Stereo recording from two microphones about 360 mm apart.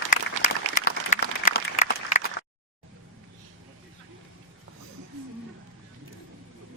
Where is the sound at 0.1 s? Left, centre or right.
Left.